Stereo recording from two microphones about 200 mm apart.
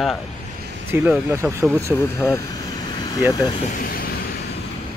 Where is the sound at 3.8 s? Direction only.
45° left (ahead or behind).